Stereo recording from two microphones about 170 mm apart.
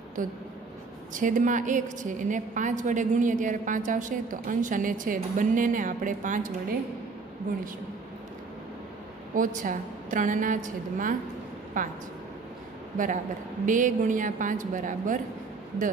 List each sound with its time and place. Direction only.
0.2 s a woman's voice: 50° right (ahead or behind)
9.3 s a woman's voice: 50° right (ahead or behind)
12.9 s a woman's voice: 50° right (ahead or behind)